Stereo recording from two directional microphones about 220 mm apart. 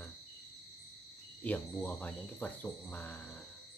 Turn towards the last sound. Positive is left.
turn(degrees=5)  # may be behind; listen again after turning